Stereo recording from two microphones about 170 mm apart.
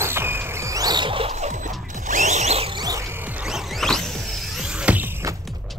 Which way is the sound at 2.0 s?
45° right (ahead or behind).